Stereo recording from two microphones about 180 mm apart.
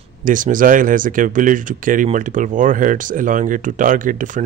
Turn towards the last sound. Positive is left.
turn(degrees=-45)  # may be behind; listen again after turning